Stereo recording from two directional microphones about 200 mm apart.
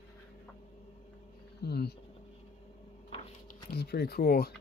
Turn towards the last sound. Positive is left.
turn(degrees=50)  # may be behind; listen again after turning